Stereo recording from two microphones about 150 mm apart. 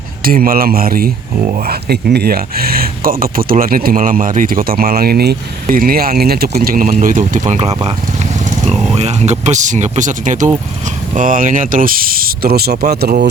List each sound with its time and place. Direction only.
0.3 s speech: 75° right (ahead or behind)
1.6 s speech: 90° right
6.7 s speech: 65° right (ahead or behind); by 13.2 s 90° right